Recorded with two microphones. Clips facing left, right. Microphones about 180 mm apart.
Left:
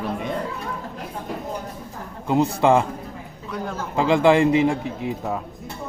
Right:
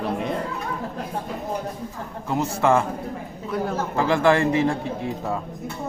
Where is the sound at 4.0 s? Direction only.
15° left (ahead or behind).